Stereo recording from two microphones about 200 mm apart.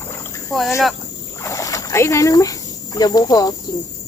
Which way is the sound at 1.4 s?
15° left (ahead or behind).